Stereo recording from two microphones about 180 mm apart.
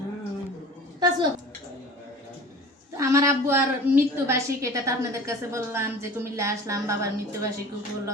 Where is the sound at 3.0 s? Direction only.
15° right (ahead or behind).